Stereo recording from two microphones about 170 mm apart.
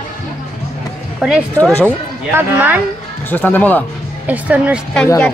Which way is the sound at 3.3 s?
10° left (ahead or behind).